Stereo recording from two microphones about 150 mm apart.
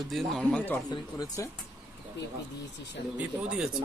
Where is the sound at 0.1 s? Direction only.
Centre (ahead or behind).